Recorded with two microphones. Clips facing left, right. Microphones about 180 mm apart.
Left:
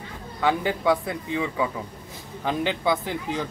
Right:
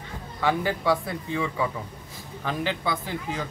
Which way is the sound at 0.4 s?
20° left (ahead or behind).